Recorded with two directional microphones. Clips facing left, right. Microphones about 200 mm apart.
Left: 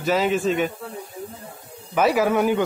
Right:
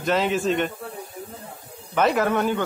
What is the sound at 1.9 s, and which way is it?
Speech, 5° left (ahead or behind).